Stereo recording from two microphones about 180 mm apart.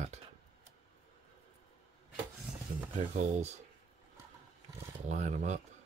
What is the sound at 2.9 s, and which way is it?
Speech, 40° right (ahead or behind).